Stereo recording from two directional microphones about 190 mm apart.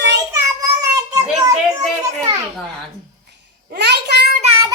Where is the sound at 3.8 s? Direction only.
60° right (ahead or behind).